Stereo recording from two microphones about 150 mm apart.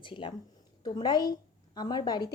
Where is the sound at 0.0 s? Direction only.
35° left (ahead or behind).